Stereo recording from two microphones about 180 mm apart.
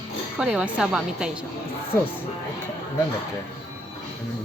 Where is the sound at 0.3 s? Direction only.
5° right (ahead or behind).